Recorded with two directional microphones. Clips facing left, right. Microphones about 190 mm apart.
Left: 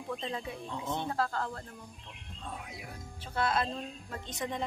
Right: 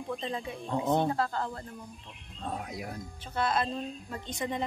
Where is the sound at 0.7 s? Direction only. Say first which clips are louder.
Right 11 dB; 50° right (ahead or behind).